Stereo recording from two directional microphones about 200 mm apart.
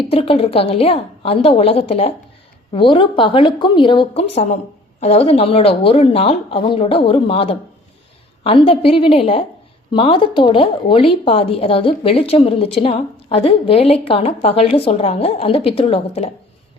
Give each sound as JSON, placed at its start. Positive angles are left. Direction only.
{"t": 0.1, "sound": "a woman's voice", "side_deg": 30}